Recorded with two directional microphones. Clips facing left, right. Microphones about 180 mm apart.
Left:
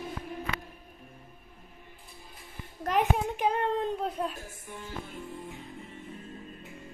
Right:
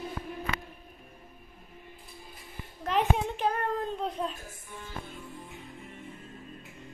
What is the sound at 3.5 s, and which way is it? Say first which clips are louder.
Child singing: left 4 dB; 25° left (ahead or behind).